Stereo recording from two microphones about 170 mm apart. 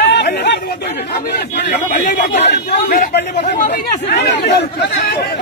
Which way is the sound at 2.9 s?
60° left (ahead or behind).